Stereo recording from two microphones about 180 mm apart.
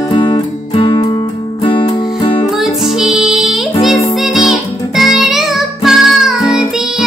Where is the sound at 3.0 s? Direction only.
Centre (ahead or behind).